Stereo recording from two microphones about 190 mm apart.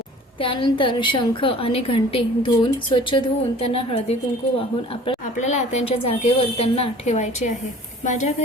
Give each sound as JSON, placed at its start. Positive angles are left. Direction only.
{"t": 0.3, "sound": "a woman's voice", "side_deg": 25}
{"t": 5.0, "sound": "a woman's voice", "side_deg": 35}